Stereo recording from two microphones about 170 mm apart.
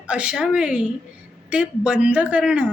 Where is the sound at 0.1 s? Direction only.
5° right (ahead or behind).